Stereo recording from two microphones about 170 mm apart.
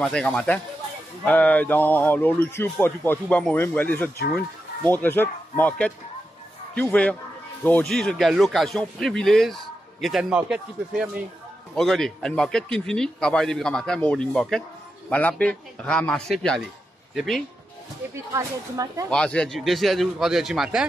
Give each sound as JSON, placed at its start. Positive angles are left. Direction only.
{"t": 0.0, "sound": "speech", "side_deg": 5}
{"t": 18.1, "sound": "speech", "side_deg": -20}
{"t": 19.0, "sound": "speech", "side_deg": 5}